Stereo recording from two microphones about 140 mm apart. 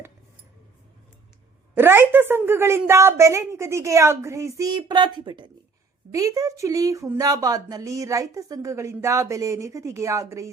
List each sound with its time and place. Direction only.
1.7 s speech: 15° right (ahead or behind)